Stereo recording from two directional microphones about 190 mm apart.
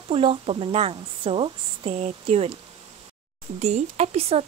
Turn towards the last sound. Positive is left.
turn(degrees=-30)  # may be behind; listen again after turning